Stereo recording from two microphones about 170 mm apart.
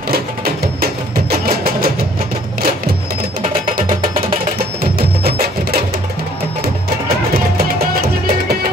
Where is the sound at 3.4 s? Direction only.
55° right (ahead or behind).